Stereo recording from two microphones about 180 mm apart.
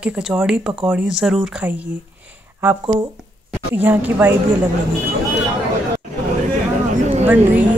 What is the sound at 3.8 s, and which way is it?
Speech, 10° right (ahead or behind).